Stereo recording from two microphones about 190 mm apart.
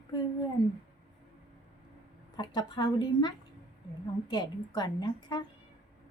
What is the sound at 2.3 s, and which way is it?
A woman's voice, 20° left (ahead or behind).